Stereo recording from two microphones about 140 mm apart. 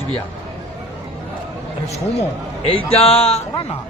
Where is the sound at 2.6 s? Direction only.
45° left (ahead or behind).